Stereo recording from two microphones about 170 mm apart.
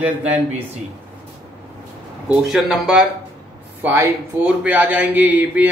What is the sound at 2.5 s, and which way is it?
A man's voice, 5° right (ahead or behind).